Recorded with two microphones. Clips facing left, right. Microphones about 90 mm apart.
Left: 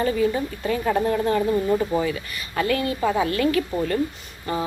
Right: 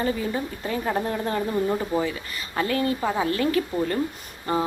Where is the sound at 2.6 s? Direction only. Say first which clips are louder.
Left 1 dB; 25° right (ahead or behind).